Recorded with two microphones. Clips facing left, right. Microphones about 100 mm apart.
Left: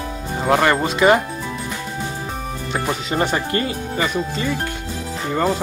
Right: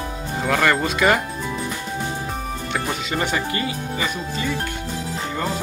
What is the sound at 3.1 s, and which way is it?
Speech, 40° left (ahead or behind).